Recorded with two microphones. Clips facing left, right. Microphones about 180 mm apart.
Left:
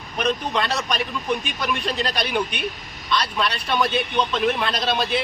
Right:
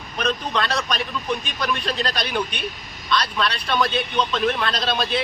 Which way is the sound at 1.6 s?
10° left (ahead or behind).